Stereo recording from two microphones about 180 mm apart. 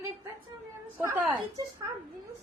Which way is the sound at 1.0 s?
15° right (ahead or behind).